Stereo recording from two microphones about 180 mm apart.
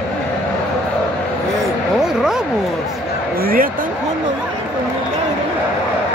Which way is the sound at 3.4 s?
55° right (ahead or behind).